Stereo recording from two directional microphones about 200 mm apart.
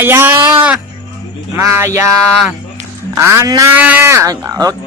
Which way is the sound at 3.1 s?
15° right (ahead or behind).